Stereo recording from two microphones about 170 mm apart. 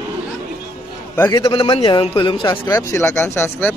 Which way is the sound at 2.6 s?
15° left (ahead or behind).